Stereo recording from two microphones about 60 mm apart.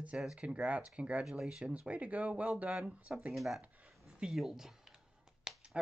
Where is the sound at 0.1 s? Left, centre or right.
Right.